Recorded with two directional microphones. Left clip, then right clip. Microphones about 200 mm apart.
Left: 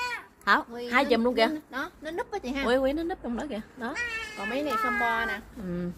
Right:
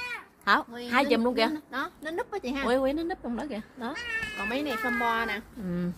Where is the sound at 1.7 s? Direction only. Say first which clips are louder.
Right 1 dB; 15° right (ahead or behind).